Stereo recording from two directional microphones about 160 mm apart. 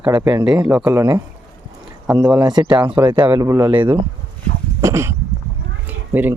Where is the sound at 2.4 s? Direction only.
25° right (ahead or behind).